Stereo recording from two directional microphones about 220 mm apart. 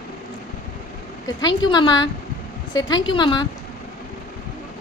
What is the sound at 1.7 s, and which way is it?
A woman's voice, 20° left (ahead or behind).